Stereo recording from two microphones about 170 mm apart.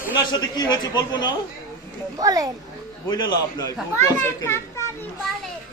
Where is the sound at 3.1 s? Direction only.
25° left (ahead or behind).